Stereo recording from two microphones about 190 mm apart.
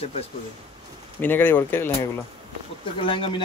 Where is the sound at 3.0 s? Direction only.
25° left (ahead or behind).